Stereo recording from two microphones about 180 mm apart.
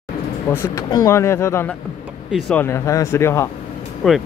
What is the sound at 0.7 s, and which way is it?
Speech, 20° left (ahead or behind).